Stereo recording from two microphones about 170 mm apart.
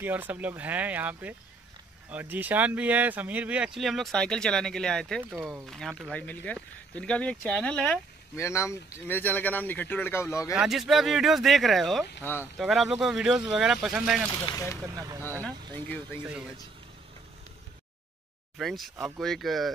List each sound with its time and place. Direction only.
0.0 s speech: 10° right (ahead or behind)
8.4 s speech: 15° left (ahead or behind)
10.5 s speech: 5° right (ahead or behind)
12.2 s speech: 15° left (ahead or behind)
12.5 s speech: centre (ahead or behind)
14.4 s speech: 20° left (ahead or behind)
14.8 s speech: 20° right (ahead or behind)
15.2 s speech: 10° left (ahead or behind)
18.6 s speech: centre (ahead or behind)